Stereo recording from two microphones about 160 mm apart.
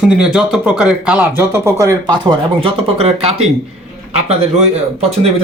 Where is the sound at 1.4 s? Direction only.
15° right (ahead or behind).